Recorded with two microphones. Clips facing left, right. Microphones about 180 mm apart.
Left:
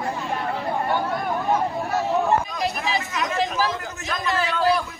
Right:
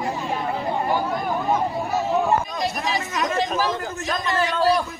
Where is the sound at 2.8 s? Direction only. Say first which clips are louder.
Right 1 dB; 35° right (ahead or behind).